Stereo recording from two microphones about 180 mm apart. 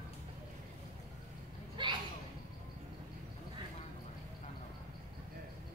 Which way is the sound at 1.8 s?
25° right (ahead or behind).